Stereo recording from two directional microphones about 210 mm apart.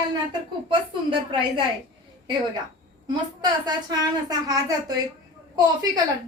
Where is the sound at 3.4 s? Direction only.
20° right (ahead or behind).